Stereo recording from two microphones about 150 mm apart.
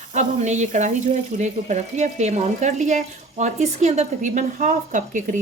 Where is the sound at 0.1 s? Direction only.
50° right (ahead or behind).